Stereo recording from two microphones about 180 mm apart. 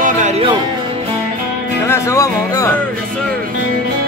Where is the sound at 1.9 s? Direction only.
15° left (ahead or behind).